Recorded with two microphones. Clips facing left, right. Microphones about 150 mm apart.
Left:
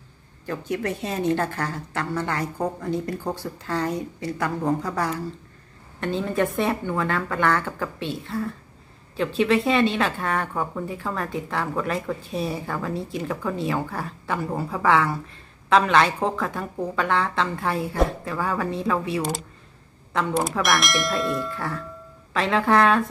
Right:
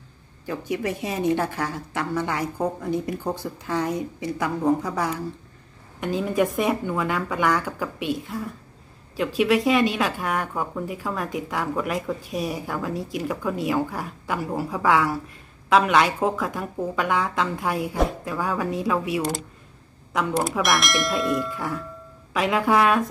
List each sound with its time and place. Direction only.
0.5 s speech: 15° right (ahead or behind)
20.3 s speech: centre (ahead or behind)